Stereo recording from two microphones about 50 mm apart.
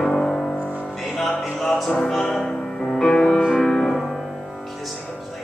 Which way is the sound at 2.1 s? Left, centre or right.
Centre.